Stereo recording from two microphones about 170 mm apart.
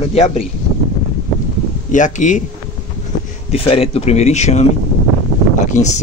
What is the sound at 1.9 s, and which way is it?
Speech, 45° left (ahead or behind).